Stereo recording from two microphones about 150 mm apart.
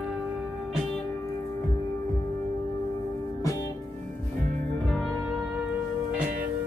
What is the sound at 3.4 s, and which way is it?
Music, 20° left (ahead or behind).